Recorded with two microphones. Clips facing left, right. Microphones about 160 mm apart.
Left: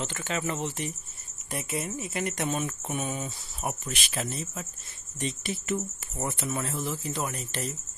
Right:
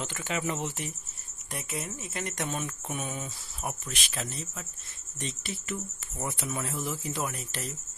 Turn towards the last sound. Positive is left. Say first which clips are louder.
# left 2 dB
turn(degrees=0)  # may be behind; listen again after turning